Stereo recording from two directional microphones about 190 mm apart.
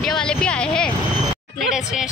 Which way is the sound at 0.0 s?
Centre (ahead or behind).